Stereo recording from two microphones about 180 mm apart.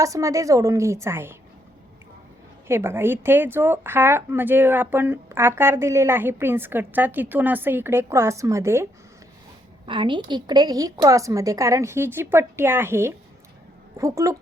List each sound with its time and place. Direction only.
0.0 s speech: 20° right (ahead or behind)
2.6 s speech: 15° right (ahead or behind)
9.8 s speech: 25° right (ahead or behind)